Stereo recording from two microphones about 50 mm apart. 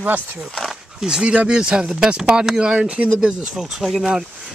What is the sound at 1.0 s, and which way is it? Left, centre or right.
Speech, centre.